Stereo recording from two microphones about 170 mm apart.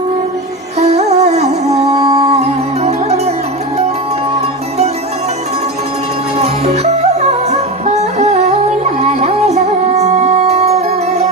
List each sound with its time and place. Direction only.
0.8 s music: 40° right (ahead or behind)
2.0 s music: 20° right (ahead or behind)
2.3 s music: 40° right (ahead or behind)
6.4 s music: 40° right (ahead or behind)